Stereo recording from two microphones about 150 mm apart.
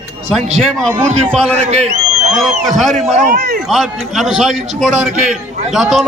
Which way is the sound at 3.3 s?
90° right.